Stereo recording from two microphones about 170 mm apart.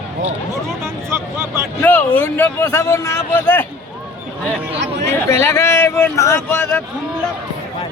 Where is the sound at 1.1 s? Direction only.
15° right (ahead or behind).